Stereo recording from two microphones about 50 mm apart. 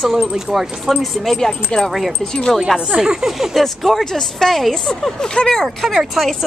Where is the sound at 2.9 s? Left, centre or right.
Centre.